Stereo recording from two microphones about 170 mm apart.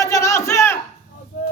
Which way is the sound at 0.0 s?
20° left (ahead or behind).